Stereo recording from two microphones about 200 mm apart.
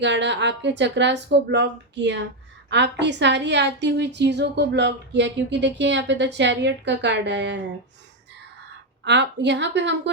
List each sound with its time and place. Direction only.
0.0 s a woman's voice: 60° right (ahead or behind)
9.0 s a woman's voice: 60° right (ahead or behind)